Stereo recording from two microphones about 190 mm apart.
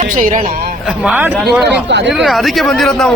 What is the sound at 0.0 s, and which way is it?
Speech, 40° right (ahead or behind).